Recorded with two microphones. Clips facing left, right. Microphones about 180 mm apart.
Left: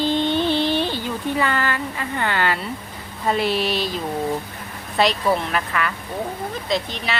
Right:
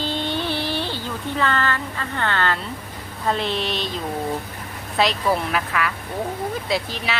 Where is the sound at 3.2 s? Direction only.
5° left (ahead or behind).